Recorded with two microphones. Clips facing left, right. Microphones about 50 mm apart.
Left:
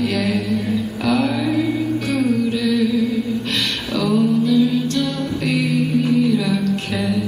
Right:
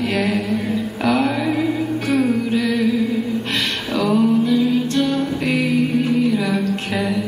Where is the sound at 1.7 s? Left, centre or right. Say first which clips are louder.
Right 1 dB; centre.